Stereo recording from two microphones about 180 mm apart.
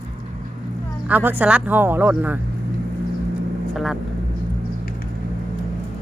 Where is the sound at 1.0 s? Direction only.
10° right (ahead or behind).